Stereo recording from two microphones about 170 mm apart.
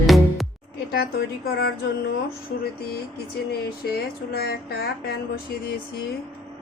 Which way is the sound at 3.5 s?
65° left (ahead or behind).